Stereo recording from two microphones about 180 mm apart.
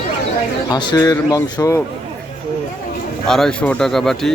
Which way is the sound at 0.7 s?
25° left (ahead or behind).